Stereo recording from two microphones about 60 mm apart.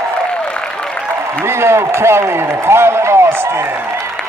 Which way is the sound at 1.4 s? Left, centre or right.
Right.